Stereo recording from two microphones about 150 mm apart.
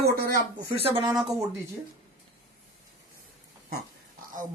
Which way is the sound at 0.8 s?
40° right (ahead or behind).